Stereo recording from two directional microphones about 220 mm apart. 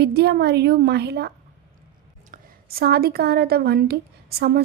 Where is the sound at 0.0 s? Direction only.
50° right (ahead or behind).